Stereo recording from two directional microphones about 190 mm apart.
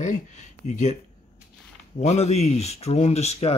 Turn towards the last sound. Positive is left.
turn(degrees=35)  # may be behind; listen again after turning